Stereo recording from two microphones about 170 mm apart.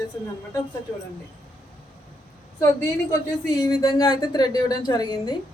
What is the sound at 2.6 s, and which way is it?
A woman's voice, 20° left (ahead or behind).